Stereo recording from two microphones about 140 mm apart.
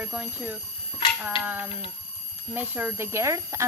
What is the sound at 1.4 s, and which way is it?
Speech, 10° right (ahead or behind).